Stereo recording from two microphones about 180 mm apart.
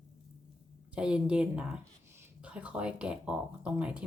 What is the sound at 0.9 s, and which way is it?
Speech, 5° right (ahead or behind).